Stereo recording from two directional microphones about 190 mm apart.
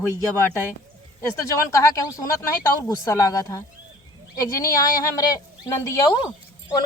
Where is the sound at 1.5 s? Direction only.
15° left (ahead or behind).